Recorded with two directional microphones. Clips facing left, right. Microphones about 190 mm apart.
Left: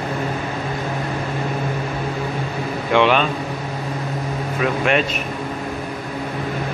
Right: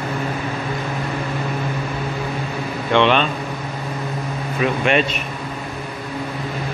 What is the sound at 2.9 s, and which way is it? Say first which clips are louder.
Speech: even; 5° left (ahead or behind).